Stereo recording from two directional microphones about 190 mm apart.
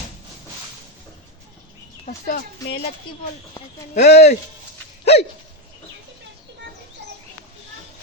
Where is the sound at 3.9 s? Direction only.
60° left (ahead or behind).